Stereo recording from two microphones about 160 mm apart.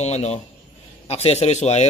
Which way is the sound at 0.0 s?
45° left (ahead or behind).